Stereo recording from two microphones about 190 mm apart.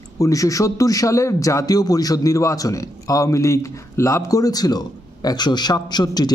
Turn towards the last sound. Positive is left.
turn(degrees=20)  # may be behind; listen again after turning